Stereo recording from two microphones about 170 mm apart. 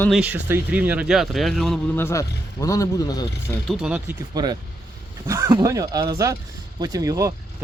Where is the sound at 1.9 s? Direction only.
15° left (ahead or behind).